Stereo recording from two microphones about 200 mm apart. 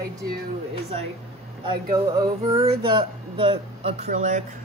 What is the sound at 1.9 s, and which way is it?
Music, 15° right (ahead or behind).